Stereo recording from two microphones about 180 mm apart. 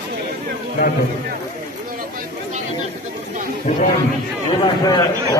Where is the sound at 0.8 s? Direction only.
60° left (ahead or behind).